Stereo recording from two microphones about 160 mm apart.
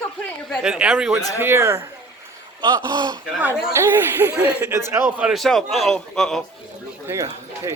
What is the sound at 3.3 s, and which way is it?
Speech, 10° right (ahead or behind).